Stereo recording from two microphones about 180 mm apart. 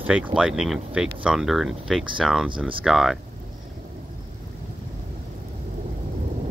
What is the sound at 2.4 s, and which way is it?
Speech, 30° right (ahead or behind).